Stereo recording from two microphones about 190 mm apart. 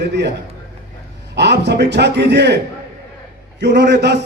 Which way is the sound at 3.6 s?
65° right (ahead or behind).